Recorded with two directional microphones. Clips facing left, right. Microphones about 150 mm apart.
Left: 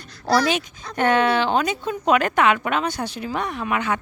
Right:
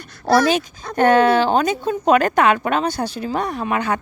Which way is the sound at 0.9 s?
40° right (ahead or behind).